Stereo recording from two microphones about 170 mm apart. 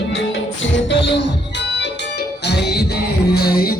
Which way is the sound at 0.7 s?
90° left.